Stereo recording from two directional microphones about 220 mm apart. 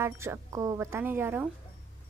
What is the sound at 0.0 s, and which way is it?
A woman's voice, 10° right (ahead or behind).